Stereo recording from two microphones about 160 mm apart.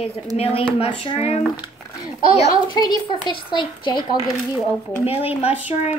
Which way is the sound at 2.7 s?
25° left (ahead or behind).